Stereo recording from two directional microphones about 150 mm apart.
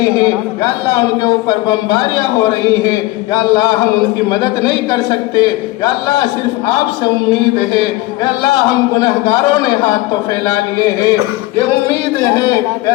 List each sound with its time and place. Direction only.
1.5 s a man's voice: 30° left (ahead or behind)
3.5 s a man's voice: 25° left (ahead or behind)